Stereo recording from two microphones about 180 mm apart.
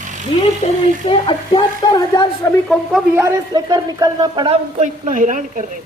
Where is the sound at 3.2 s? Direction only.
20° right (ahead or behind).